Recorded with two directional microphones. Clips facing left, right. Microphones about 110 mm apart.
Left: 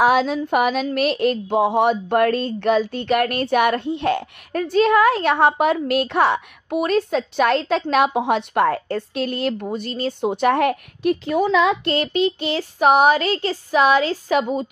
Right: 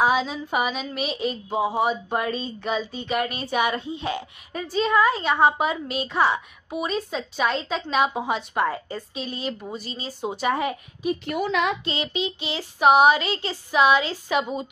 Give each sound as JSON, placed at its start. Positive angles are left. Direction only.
{"t": 0.0, "sound": "a sound", "side_deg": 70}
{"t": 9.8, "sound": "a woman's voice", "side_deg": 60}
{"t": 11.8, "sound": "child singing", "side_deg": 55}